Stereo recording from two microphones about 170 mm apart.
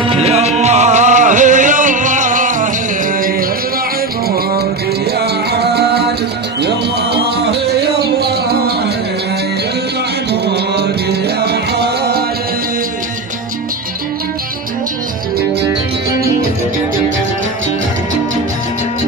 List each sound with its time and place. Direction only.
0.1 s music: 40° right (ahead or behind)
5.2 s music: 70° right (ahead or behind)
7.7 s music: 70° right (ahead or behind)
10.3 s music: 75° right (ahead or behind)